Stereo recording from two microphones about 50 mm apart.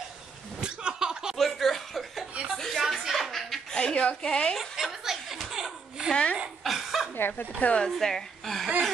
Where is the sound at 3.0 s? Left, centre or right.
Centre.